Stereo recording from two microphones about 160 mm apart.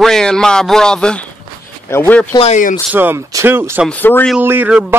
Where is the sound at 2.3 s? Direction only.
45° left (ahead or behind).